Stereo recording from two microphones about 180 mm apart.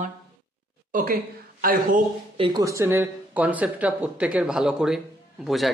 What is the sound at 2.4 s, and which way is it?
A man's voice, 20° right (ahead or behind).